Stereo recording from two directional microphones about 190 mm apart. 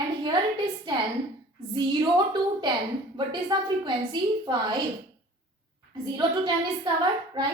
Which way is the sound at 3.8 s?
25° right (ahead or behind).